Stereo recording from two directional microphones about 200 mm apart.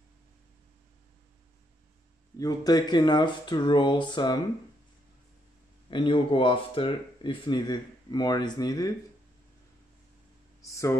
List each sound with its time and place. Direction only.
2.3 s speech: 20° left (ahead or behind)
5.9 s speech: 25° left (ahead or behind)
10.6 s speech: 15° left (ahead or behind)